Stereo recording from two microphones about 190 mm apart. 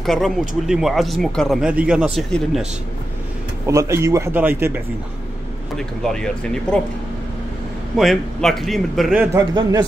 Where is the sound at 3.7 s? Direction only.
15° right (ahead or behind).